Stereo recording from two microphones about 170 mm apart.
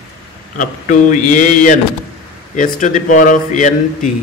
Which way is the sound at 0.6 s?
50° left (ahead or behind).